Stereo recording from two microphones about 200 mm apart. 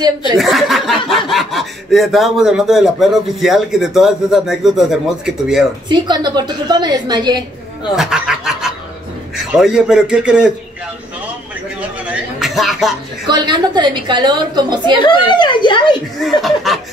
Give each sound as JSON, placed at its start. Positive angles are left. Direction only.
{"t": 0.4, "sound": "speech", "side_deg": 0}
{"t": 5.9, "sound": "a woman's voice", "side_deg": -20}
{"t": 7.9, "sound": "speech", "side_deg": 0}
{"t": 12.0, "sound": "a sound", "side_deg": -5}
{"t": 13.3, "sound": "a woman's voice", "side_deg": -20}
{"t": 15.0, "sound": "speech", "side_deg": 20}
{"t": 16.2, "sound": "speech", "side_deg": 0}